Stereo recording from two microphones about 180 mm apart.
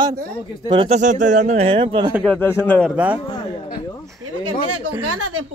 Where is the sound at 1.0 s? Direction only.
45° right (ahead or behind).